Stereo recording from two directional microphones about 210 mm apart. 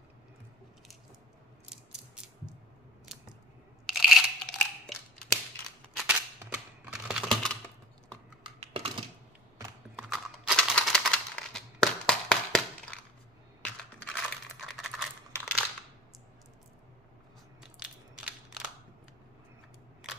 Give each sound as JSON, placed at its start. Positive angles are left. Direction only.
{"t": 1.7, "sound": "mechanisms", "side_deg": -5}
{"t": 3.8, "sound": "tearing", "side_deg": 0}
{"t": 5.9, "sound": "typing", "side_deg": -5}
{"t": 8.5, "sound": "typing", "side_deg": -30}
{"t": 9.9, "sound": "a sound", "side_deg": 0}
{"t": 14.0, "sound": "a sound", "side_deg": 5}
{"t": 17.7, "sound": "crushing", "side_deg": 0}